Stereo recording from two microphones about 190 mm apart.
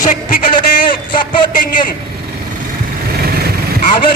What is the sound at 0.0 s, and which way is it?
Speech, 40° left (ahead or behind).